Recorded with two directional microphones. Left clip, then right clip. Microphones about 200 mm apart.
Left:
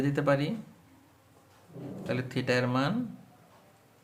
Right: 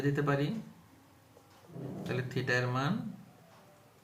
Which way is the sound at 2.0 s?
55° left (ahead or behind).